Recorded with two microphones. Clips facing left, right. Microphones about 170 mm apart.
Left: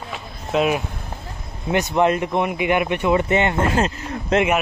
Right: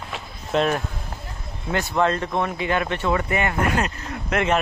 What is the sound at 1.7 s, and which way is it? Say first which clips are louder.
Speech: left 4 dB; 20° left (ahead or behind).